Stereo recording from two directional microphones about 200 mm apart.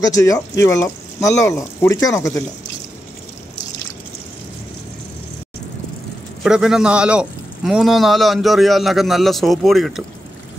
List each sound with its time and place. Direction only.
0.0 s speech: 15° left (ahead or behind)
6.4 s a man's voice: 5° right (ahead or behind)